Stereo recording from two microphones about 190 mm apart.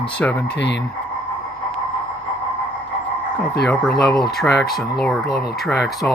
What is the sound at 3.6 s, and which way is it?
Speech, 5° left (ahead or behind).